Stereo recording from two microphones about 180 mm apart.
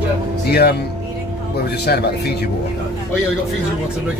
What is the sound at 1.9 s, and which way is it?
Speech, 65° left (ahead or behind).